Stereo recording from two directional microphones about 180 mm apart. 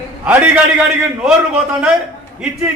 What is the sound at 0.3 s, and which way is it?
Speech, 10° right (ahead or behind).